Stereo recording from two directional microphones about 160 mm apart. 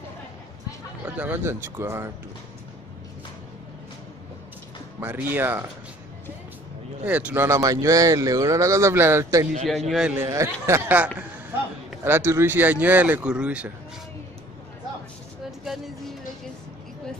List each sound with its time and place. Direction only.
1.0 s speech: 10° right (ahead or behind)
5.0 s speech: 10° right (ahead or behind)
7.1 s speech: 10° right (ahead or behind)
9.8 s a man's voice: 5° right (ahead or behind)
10.1 s speech: 20° right (ahead or behind)
15.6 s music: centre (ahead or behind)